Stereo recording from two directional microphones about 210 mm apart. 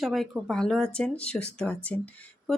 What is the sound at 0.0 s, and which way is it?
Speech, centre (ahead or behind).